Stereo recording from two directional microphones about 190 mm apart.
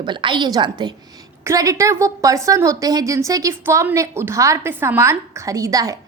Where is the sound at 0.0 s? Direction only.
25° right (ahead or behind).